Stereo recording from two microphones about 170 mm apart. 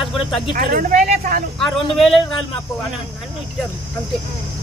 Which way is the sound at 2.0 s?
Centre (ahead or behind).